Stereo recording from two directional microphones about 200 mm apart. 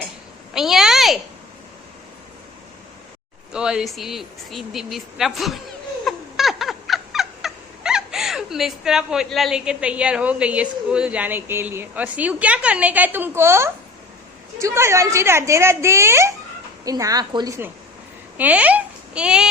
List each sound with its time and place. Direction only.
0.5 s a sound: centre (ahead or behind)
3.5 s speech: 5° right (ahead or behind)
6.1 s fowl: centre (ahead or behind)
14.6 s a woman's voice: 15° right (ahead or behind)